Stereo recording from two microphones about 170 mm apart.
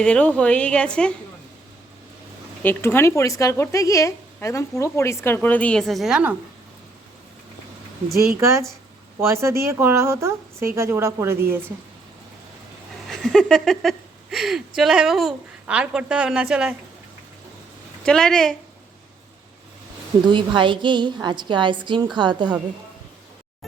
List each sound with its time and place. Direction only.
0.0 s a woman's voice: 5° left (ahead or behind)
2.6 s a woman's voice: 15° left (ahead or behind); by 6.3 s 5° right (ahead or behind)
8.4 s a woman's voice: 15° right (ahead or behind)
13.1 s speech: centre (ahead or behind)
18.0 s speech: 5° left (ahead or behind)
20.2 s a woman's voice: 30° right (ahead or behind)